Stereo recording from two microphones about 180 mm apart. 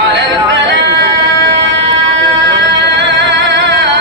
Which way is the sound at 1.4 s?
75° right (ahead or behind).